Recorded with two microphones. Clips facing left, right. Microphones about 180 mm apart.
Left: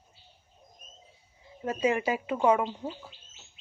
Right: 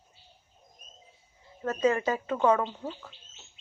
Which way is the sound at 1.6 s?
10° left (ahead or behind).